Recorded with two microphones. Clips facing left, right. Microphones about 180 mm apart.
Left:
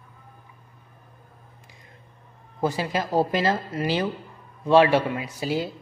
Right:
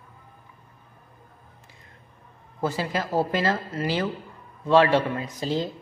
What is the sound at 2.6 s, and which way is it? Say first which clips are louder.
Speech: left 2 dB; 15° left (ahead or behind).